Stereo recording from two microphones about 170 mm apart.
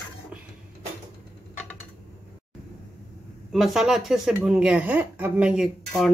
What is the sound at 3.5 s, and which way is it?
A woman's voice, centre (ahead or behind).